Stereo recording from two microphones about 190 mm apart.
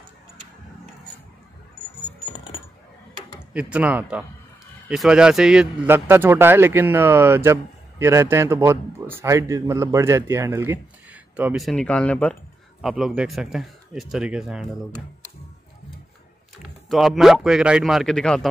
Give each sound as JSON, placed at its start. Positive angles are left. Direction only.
{"t": 2.3, "sound": "coin", "side_deg": 25}
{"t": 3.5, "sound": "speech", "side_deg": -5}
{"t": 16.9, "sound": "speech", "side_deg": 0}